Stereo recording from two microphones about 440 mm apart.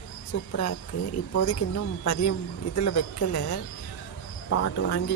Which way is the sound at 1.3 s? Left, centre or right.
Left.